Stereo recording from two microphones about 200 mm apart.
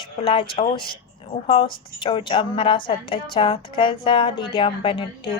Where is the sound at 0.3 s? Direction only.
25° left (ahead or behind).